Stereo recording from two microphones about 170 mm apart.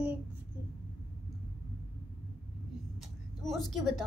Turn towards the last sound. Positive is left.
turn(degrees=0)  # may be behind; listen again after turning